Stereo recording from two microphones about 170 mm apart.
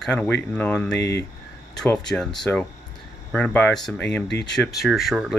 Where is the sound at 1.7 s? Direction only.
5° left (ahead or behind).